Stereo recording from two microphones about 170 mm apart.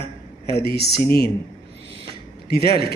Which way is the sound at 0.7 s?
75° left (ahead or behind).